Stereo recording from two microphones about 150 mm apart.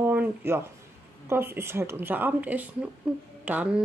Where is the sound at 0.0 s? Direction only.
10° right (ahead or behind).